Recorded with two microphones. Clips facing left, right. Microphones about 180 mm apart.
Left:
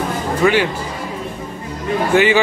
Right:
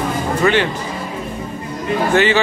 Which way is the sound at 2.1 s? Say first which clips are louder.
Left 2 dB; 10° left (ahead or behind).